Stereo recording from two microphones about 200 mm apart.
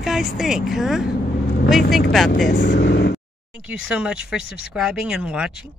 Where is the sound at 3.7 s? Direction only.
5° right (ahead or behind).